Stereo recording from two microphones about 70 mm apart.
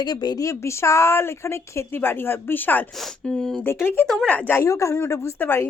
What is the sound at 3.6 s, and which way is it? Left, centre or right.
Speech, left.